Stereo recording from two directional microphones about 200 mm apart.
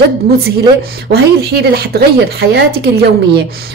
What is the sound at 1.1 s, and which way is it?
A woman's voice, 55° right (ahead or behind).